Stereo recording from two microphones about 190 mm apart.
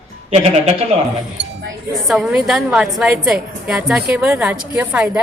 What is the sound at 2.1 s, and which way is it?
A woman's voice, centre (ahead or behind).